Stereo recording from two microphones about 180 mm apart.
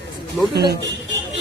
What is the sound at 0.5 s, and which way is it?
Speech, 65° right (ahead or behind).